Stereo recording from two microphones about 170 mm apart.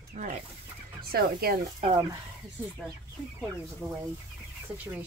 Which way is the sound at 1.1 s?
60° right (ahead or behind).